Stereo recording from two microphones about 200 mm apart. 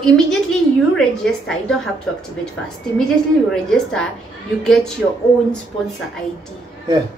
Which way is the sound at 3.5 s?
5° left (ahead or behind).